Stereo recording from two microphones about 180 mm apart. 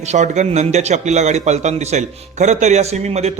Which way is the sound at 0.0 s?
40° right (ahead or behind).